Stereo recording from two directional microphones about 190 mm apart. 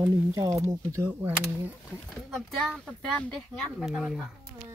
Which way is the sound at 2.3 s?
Centre (ahead or behind).